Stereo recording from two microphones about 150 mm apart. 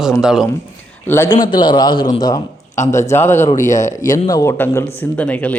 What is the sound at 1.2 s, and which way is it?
A man's voice, 30° left (ahead or behind).